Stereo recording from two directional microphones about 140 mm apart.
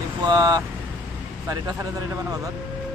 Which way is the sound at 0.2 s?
30° right (ahead or behind).